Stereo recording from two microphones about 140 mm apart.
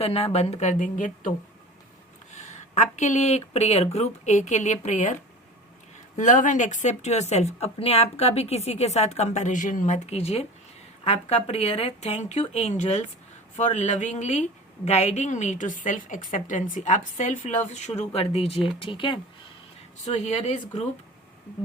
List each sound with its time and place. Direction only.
0.0 s speech: 45° left (ahead or behind); by 1.3 s 65° left (ahead or behind)
2.3 s a woman's voice: 55° left (ahead or behind)
6.1 s a woman's voice: 65° left (ahead or behind); by 19.2 s 35° left (ahead or behind)
20.1 s speech: 50° left (ahead or behind)